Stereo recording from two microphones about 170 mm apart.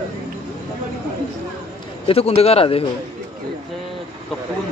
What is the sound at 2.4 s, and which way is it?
Speech, 35° left (ahead or behind).